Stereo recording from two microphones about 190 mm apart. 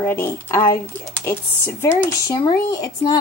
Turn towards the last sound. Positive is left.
turn(degrees=20)  # may be behind; listen again after turning